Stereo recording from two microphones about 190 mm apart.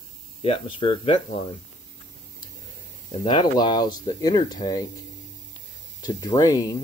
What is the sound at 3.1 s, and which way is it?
Speech, 25° left (ahead or behind).